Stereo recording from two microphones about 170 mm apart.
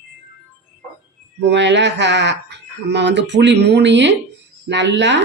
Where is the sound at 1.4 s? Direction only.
90° right.